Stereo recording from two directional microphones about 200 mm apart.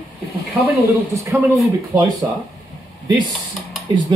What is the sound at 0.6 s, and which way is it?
Speech, 15° right (ahead or behind).